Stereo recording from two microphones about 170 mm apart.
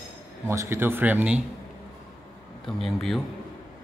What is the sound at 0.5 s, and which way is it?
Speech, 15° right (ahead or behind).